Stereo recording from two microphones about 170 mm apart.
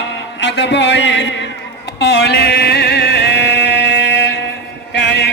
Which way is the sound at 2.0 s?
80° left.